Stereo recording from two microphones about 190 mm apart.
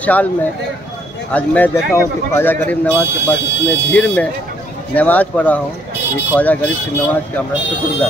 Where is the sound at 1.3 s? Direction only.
10° left (ahead or behind).